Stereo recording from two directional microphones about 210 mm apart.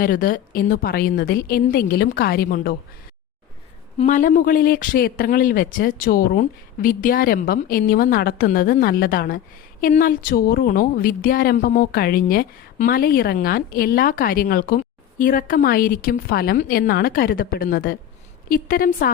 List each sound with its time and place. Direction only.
0.0 s a woman's voice: 45° left (ahead or behind)
3.9 s a woman's voice: 35° left (ahead or behind)